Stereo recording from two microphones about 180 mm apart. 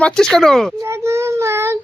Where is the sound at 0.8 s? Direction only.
15° right (ahead or behind).